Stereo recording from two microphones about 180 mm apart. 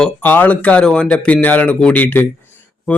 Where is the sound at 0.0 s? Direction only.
10° left (ahead or behind).